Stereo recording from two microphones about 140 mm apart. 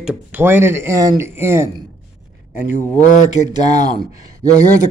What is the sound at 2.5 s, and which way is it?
Speech, 65° left (ahead or behind).